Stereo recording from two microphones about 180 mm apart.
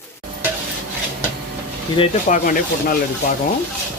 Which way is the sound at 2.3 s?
50° left (ahead or behind).